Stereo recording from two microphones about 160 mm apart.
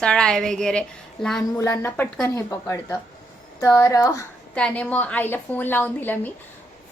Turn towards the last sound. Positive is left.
turn(degrees=10)  # may be behind; listen again after turning